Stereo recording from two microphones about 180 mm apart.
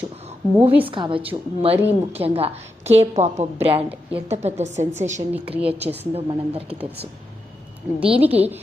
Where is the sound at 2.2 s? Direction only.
35° right (ahead or behind).